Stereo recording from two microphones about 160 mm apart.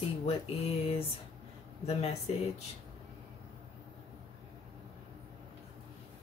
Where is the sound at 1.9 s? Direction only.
40° left (ahead or behind).